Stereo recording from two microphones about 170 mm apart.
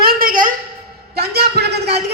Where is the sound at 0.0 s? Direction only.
60° right (ahead or behind).